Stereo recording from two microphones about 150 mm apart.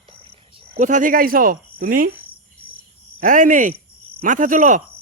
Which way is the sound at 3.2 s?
60° right (ahead or behind).